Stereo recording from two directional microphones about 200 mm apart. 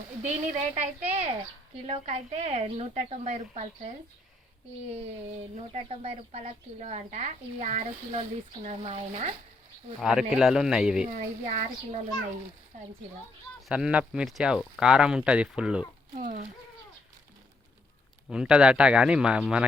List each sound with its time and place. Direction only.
0.3 s a woman's voice: 35° right (ahead or behind)
5.7 s a woman's voice: 30° right (ahead or behind)
10.0 s speech: 5° right (ahead or behind)
11.1 s a woman's voice: 35° right (ahead or behind)
13.7 s speech: 5° right (ahead or behind)
16.1 s a woman's voice: 40° right (ahead or behind)
18.3 s speech: 5° right (ahead or behind)